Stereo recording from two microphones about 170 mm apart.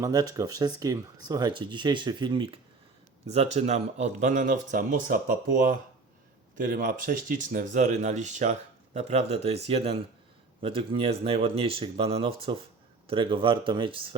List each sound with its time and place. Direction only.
0.0 s speech: 20° right (ahead or behind)